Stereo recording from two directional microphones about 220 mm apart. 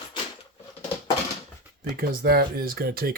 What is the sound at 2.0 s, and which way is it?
Speech, 45° right (ahead or behind).